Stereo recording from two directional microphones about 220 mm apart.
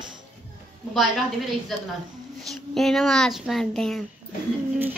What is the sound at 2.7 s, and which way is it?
A child's voice, centre (ahead or behind).